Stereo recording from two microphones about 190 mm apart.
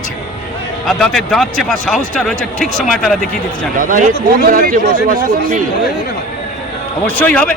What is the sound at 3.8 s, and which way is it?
A man's voice, 45° right (ahead or behind).